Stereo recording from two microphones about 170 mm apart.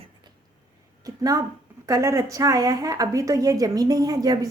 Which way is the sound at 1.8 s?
20° right (ahead or behind).